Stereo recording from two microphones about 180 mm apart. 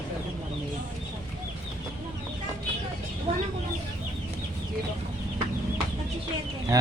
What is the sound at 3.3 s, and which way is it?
Chicken, 35° right (ahead or behind).